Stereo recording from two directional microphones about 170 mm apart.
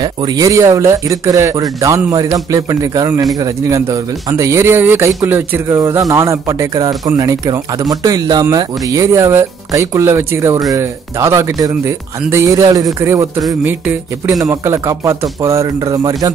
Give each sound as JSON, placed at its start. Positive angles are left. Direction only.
{"t": 0.0, "sound": "speech", "side_deg": -25}